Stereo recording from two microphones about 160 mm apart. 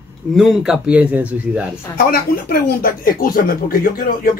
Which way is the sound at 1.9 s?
65° left (ahead or behind).